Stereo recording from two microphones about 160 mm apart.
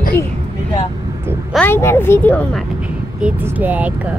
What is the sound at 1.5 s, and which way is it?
Speech, 10° left (ahead or behind).